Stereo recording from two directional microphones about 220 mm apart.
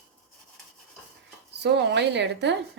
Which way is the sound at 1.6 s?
50° right (ahead or behind).